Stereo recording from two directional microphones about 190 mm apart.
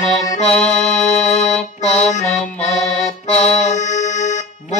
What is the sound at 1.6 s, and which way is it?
Music, 35° left (ahead or behind).